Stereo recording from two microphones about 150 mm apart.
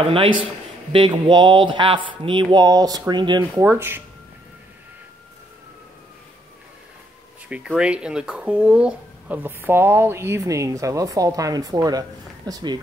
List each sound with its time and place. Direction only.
0.1 s speech: 35° right (ahead or behind)
3.6 s speech: 15° right (ahead or behind)
7.4 s speech: 5° right (ahead or behind); by 12.8 s 25° right (ahead or behind)